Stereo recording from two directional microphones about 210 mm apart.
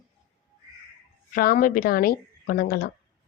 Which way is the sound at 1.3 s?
45° left (ahead or behind).